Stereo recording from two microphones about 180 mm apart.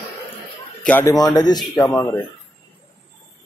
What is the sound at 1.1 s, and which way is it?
Speech, 20° left (ahead or behind).